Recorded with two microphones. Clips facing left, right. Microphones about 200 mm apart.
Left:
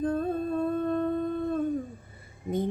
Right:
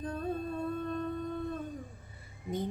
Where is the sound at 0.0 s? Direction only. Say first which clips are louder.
Left 10 dB; 55° left (ahead or behind).